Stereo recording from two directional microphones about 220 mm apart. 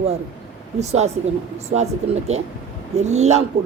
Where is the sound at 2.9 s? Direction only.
30° right (ahead or behind).